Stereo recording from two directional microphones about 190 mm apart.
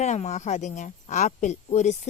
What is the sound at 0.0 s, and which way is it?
Speech, 35° left (ahead or behind).